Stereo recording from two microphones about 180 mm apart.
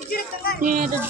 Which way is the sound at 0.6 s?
50° right (ahead or behind).